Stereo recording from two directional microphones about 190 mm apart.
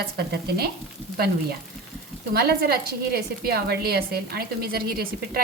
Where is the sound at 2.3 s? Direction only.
55° right (ahead or behind).